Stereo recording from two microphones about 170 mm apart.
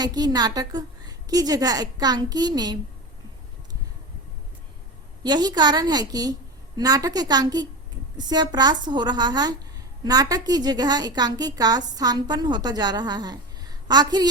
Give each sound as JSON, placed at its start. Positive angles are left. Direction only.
{"t": 0.0, "sound": "a woman's voice", "side_deg": -25}
{"t": 5.2, "sound": "a woman's voice", "side_deg": -25}